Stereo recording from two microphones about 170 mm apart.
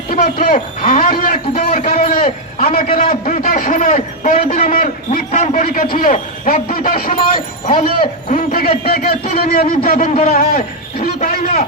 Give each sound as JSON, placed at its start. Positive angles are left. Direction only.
{"t": 0.1, "sound": "a man's voice", "side_deg": 55}